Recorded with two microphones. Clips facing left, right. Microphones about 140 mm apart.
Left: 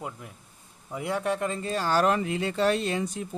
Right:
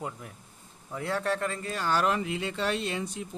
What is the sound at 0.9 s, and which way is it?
Speech, 15° left (ahead or behind).